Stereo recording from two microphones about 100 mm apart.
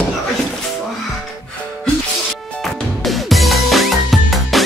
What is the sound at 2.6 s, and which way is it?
Music, centre (ahead or behind).